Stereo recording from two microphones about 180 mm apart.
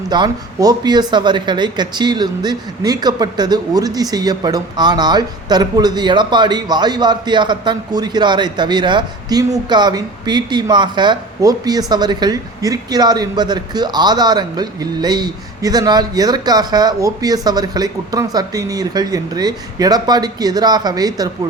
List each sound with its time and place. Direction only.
0.1 s speech: 20° right (ahead or behind)